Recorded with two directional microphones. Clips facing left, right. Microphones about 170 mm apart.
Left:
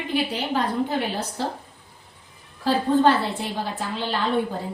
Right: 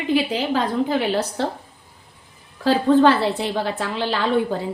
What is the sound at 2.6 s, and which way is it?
A woman's voice, 90° right.